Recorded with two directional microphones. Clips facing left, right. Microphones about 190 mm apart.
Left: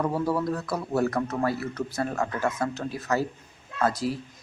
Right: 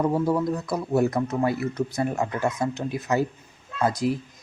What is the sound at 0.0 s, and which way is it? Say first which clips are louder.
Speech: right 3 dB; 15° right (ahead or behind).